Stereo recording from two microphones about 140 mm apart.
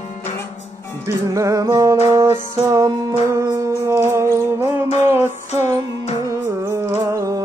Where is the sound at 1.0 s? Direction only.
25° right (ahead or behind).